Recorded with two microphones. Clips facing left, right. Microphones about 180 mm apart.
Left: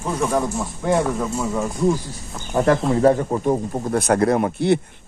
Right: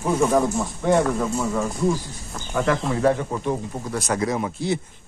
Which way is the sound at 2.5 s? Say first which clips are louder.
Left 5 dB; 35° left (ahead or behind).